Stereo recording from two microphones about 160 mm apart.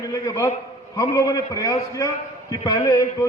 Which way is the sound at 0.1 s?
20° left (ahead or behind).